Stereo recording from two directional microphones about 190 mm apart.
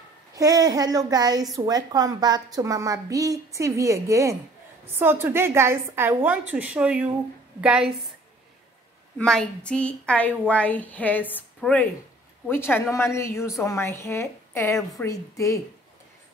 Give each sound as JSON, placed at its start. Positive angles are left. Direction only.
{"t": 0.4, "sound": "a woman's voice", "side_deg": -20}
{"t": 9.2, "sound": "a woman's voice", "side_deg": 5}